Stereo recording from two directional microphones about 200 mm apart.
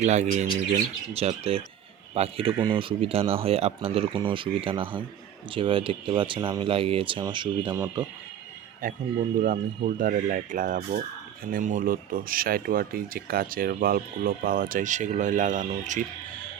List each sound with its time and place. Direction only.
0.0 s speech: 35° right (ahead or behind)
8.8 s speech: 45° right (ahead or behind)